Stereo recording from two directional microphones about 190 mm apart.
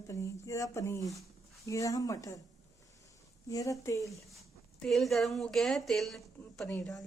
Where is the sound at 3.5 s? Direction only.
15° left (ahead or behind).